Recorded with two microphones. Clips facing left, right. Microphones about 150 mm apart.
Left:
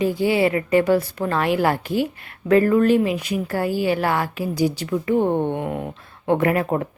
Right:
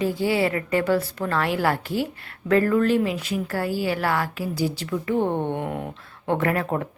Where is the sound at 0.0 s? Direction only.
15° left (ahead or behind).